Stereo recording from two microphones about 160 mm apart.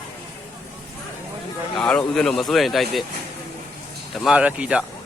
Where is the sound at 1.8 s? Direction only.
5° left (ahead or behind).